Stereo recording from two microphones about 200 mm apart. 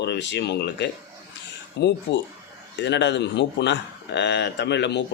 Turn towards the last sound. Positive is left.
turn(degrees=60)  # may be behind; listen again after turning